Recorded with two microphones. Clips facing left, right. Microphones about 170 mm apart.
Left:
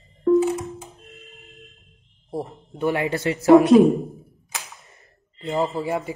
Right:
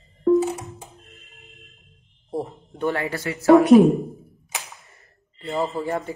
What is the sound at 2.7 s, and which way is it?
Speech, 15° left (ahead or behind).